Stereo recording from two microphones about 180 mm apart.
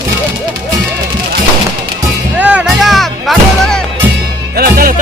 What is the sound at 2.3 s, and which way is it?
Music, 5° right (ahead or behind).